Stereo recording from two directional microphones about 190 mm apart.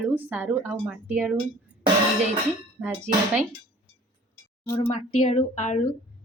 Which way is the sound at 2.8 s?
10° right (ahead or behind).